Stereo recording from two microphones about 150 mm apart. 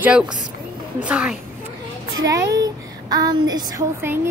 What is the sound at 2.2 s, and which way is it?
A woman's voice, 20° right (ahead or behind).